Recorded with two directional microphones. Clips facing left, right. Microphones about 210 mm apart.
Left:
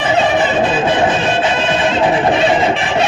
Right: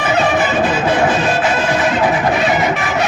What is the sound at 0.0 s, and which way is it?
Music, 25° left (ahead or behind).